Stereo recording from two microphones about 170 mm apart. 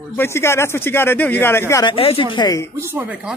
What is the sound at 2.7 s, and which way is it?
Speech, 15° right (ahead or behind).